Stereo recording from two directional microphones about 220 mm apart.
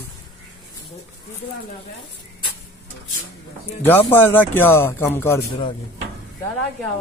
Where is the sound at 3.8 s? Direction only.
10° left (ahead or behind).